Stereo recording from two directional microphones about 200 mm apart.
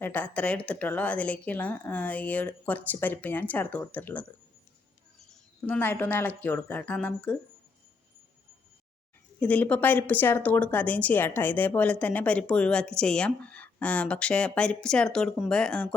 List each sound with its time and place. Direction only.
0.0 s a woman's voice: 10° left (ahead or behind)
9.4 s speech: 5° left (ahead or behind)